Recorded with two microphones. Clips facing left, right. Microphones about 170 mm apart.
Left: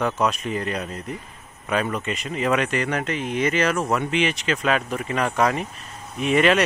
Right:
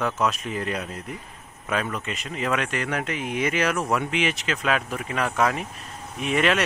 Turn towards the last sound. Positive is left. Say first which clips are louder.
# left 4 dB
turn(degrees=0)  # may be behind; listen again after turning